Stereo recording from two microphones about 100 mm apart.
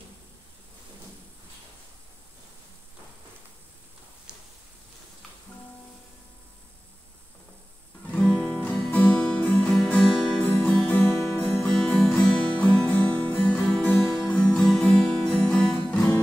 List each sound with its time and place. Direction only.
4.3 s a sound: 10° right (ahead or behind)
8.1 s music: 10° left (ahead or behind)
11.6 s music: 10° left (ahead or behind)